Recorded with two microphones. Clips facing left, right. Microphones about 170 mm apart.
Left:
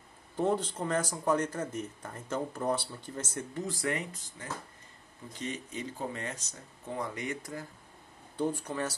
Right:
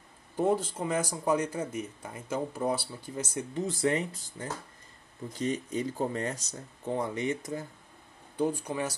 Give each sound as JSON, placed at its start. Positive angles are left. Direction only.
{"t": 0.4, "sound": "speech", "side_deg": -10}
{"t": 7.0, "sound": "speech", "side_deg": -25}
{"t": 8.4, "sound": "speech", "side_deg": -15}